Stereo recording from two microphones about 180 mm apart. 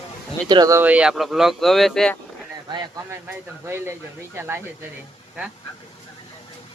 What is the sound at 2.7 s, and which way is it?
Speech, 20° right (ahead or behind).